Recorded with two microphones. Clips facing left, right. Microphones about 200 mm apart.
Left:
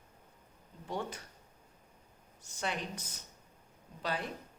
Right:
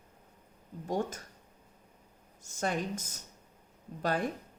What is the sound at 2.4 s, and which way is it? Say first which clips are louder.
A woman's voice: right 5 dB; 45° right (ahead or behind).